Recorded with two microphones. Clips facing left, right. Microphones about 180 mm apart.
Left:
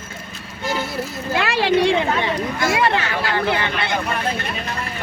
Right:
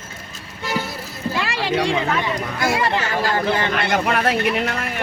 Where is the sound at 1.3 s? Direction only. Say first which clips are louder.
Left 5 dB; 60° left (ahead or behind).